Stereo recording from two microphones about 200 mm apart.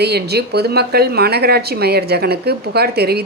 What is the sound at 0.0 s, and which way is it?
A woman's voice, 55° right (ahead or behind).